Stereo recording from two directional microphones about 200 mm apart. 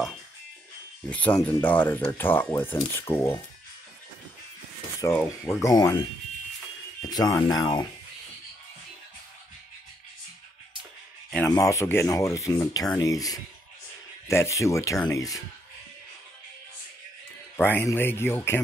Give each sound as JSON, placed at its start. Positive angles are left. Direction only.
{"t": 1.1, "sound": "speech", "side_deg": 10}
{"t": 5.0, "sound": "speech", "side_deg": 15}
{"t": 7.1, "sound": "speech", "side_deg": 20}
{"t": 11.4, "sound": "speech", "side_deg": 15}
{"t": 17.6, "sound": "speech", "side_deg": 10}